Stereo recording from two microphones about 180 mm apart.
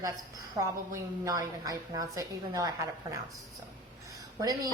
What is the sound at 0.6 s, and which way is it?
A woman's voice, 20° right (ahead or behind).